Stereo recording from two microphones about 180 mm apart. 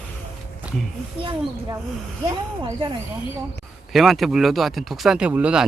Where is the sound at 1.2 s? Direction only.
25° right (ahead or behind).